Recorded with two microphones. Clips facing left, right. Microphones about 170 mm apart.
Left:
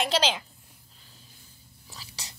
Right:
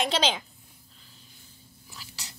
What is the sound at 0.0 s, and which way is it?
Speech, 5° left (ahead or behind).